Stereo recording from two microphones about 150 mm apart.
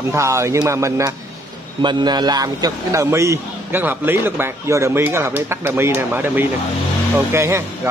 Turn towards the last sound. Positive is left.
turn(degrees=-15)  # may be behind; listen again after turning